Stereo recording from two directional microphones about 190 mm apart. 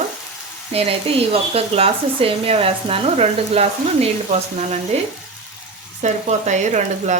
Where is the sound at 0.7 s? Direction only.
30° right (ahead or behind).